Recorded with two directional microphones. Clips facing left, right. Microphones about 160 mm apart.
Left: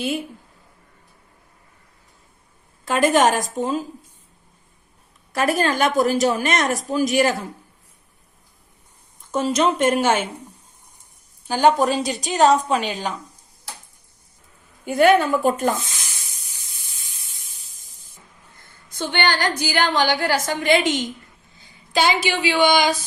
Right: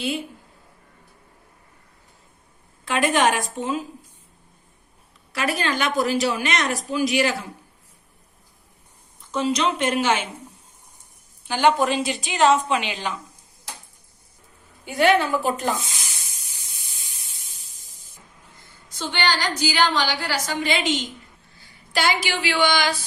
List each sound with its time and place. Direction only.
2.8 s a woman's voice: 40° left (ahead or behind)
5.3 s a woman's voice: 45° left (ahead or behind)
9.3 s a woman's voice: 45° left (ahead or behind)
11.4 s a woman's voice: 40° left (ahead or behind)
14.8 s a woman's voice: 50° left (ahead or behind)
18.6 s a woman's voice: 55° left (ahead or behind)
21.5 s a woman's voice: 20° left (ahead or behind)